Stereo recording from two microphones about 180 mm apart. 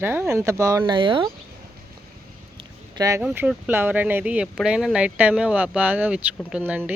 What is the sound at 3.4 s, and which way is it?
Speech, 10° right (ahead or behind).